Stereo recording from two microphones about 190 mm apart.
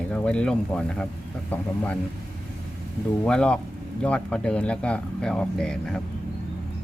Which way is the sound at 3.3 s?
5° left (ahead or behind).